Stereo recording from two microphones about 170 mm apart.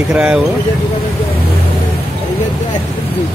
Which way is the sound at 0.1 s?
5° right (ahead or behind).